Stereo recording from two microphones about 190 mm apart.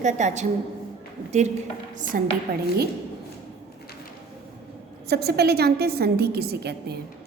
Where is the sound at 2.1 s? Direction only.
50° right (ahead or behind).